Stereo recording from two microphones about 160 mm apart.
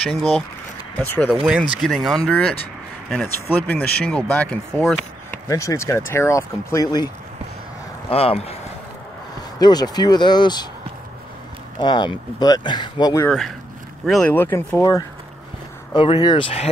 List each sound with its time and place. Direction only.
0.1 s speech: centre (ahead or behind)
1.3 s speech: 5° right (ahead or behind)
4.8 s chop: 5° left (ahead or behind)
5.5 s speech: 20° left (ahead or behind)
8.1 s speech: 40° left (ahead or behind)
9.6 s speech: 25° left (ahead or behind)
11.8 s speech: 30° left (ahead or behind)
14.0 s speech: centre (ahead or behind)
14.3 s speech: 15° left (ahead or behind); by 16.4 s 30° left (ahead or behind)